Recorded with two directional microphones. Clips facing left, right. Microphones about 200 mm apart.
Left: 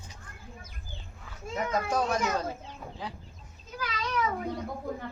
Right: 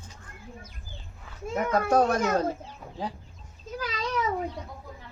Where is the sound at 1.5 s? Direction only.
55° right (ahead or behind).